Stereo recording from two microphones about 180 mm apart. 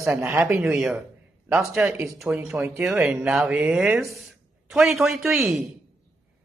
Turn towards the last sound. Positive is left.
turn(degrees=0)  # may be behind; listen again after turning